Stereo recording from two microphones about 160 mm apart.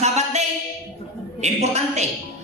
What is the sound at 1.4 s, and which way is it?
Speech, 45° right (ahead or behind).